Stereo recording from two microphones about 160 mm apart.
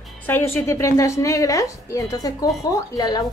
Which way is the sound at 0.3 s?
15° left (ahead or behind).